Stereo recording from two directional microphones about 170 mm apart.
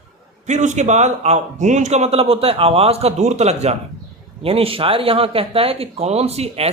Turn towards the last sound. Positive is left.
turn(degrees=-35)  # may be behind; listen again after turning